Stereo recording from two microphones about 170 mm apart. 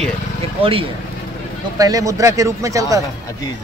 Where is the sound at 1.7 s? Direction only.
20° right (ahead or behind).